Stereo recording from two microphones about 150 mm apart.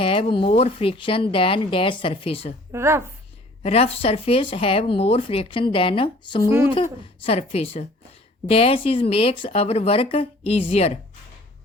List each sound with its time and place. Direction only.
0.0 s speech: 35° left (ahead or behind)
2.7 s speech: 15° right (ahead or behind)
3.6 s speech: 40° left (ahead or behind)
6.5 s speech: 15° right (ahead or behind)
7.3 s speech: 40° left (ahead or behind)